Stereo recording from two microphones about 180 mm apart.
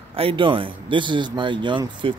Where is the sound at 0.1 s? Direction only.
30° right (ahead or behind).